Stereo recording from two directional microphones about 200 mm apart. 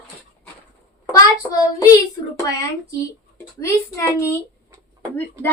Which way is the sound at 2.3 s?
15° left (ahead or behind).